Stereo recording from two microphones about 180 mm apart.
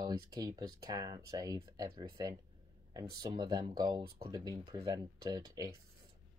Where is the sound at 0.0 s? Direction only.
20° right (ahead or behind).